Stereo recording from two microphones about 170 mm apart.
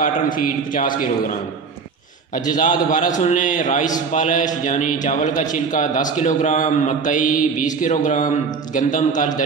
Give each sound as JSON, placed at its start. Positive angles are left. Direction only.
{"t": 0.0, "sound": "a man's voice", "side_deg": 55}
{"t": 2.6, "sound": "a man's voice", "side_deg": 45}